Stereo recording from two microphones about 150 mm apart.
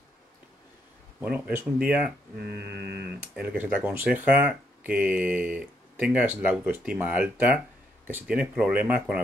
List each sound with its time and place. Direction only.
1.2 s speech: 10° right (ahead or behind)
2.4 s mantra: 90° right
3.2 s speech: 10° right (ahead or behind)